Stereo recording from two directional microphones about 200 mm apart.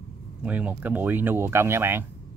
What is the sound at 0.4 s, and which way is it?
Speech, 5° right (ahead or behind).